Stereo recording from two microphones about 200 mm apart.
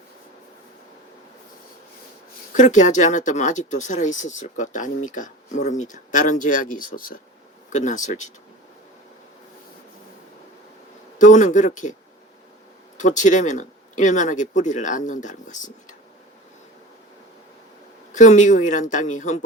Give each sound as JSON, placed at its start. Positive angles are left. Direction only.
{"t": 2.5, "sound": "speech", "side_deg": 35}
{"t": 11.2, "sound": "speech", "side_deg": 40}
{"t": 13.0, "sound": "speech", "side_deg": 40}
{"t": 18.1, "sound": "speech", "side_deg": 40}